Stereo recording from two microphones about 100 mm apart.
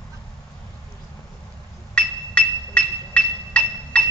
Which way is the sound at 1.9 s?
10° left (ahead or behind).